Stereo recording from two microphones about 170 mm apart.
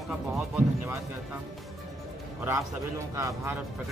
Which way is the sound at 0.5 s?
10° right (ahead or behind).